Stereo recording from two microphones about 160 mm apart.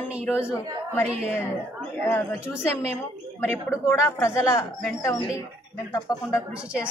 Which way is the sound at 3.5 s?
15° left (ahead or behind).